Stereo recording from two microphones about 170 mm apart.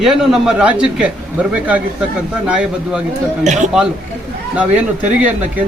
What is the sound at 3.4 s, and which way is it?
Speech, 45° right (ahead or behind).